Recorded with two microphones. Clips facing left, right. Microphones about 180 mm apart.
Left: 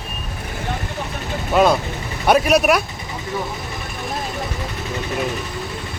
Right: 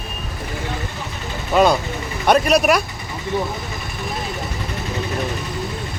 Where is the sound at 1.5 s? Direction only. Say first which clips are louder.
Even; centre (ahead or behind).